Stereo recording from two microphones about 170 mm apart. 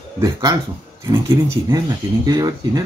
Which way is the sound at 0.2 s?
20° right (ahead or behind).